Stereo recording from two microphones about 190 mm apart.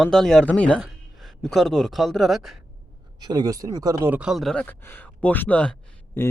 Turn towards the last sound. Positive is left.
turn(degrees=10)  # may be behind; listen again after turning